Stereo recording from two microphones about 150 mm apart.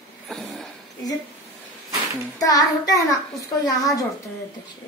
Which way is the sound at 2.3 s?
25° left (ahead or behind).